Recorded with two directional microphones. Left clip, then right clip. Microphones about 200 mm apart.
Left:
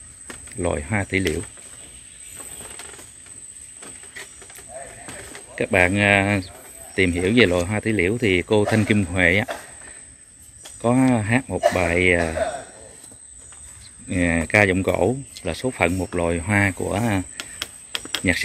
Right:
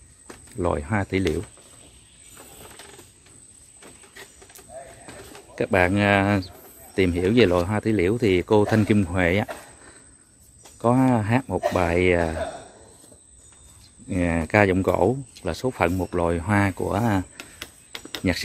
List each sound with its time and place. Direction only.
0.6 s speech: 20° right (ahead or behind)
5.6 s speech: 20° right (ahead or behind)
10.8 s speech: 15° right (ahead or behind)
14.0 s speech: 15° right (ahead or behind)
17.4 s a sound: 5° left (ahead or behind)